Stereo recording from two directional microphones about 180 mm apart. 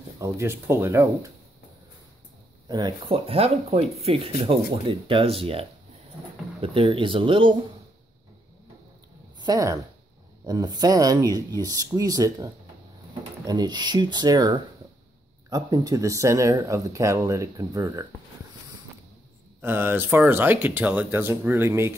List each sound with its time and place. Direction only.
0.2 s speech: 15° right (ahead or behind)
2.7 s speech: 25° right (ahead or behind)
9.4 s speech: 20° right (ahead or behind)
19.6 s speech: 10° right (ahead or behind)